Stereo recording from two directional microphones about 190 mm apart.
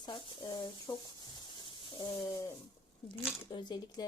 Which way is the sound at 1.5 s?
25° left (ahead or behind).